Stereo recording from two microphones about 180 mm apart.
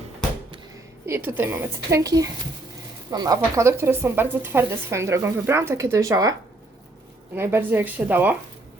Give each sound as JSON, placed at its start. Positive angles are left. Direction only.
{"t": 1.0, "sound": "speech", "side_deg": -10}
{"t": 7.3, "sound": "speech", "side_deg": -15}